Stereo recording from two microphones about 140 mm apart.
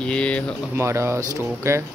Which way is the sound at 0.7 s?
20° right (ahead or behind).